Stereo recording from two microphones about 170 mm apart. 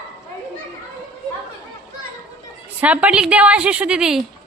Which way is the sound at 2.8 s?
10° right (ahead or behind).